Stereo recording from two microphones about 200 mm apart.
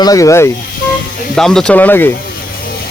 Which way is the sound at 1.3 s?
Centre (ahead or behind).